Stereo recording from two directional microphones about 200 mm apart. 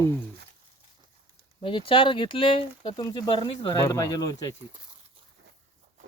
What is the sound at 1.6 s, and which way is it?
Speech, 25° left (ahead or behind).